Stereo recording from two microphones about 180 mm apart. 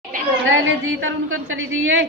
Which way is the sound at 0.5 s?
90° right.